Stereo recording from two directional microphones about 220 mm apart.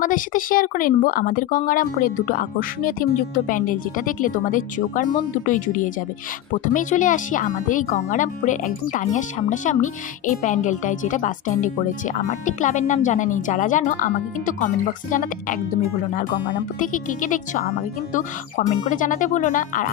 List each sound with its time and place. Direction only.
0.0 s speech: 40° left (ahead or behind)
16.7 s speech: 35° left (ahead or behind)